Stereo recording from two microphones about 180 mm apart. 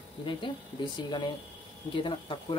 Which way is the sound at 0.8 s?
25° left (ahead or behind).